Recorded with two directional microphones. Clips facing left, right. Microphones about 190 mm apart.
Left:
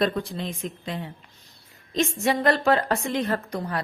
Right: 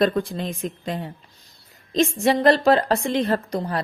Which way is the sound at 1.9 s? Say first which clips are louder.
Right 4 dB; 30° right (ahead or behind).